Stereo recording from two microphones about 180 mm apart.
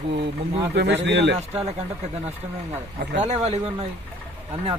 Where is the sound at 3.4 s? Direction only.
35° right (ahead or behind).